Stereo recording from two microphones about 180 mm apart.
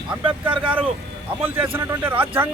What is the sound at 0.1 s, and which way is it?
Speech, 10° right (ahead or behind).